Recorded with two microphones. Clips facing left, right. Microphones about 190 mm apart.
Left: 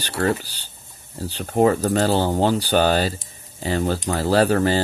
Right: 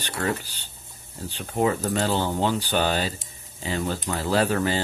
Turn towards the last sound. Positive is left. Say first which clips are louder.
# left 5 dB
turn(degrees=35)  # may be behind; listen again after turning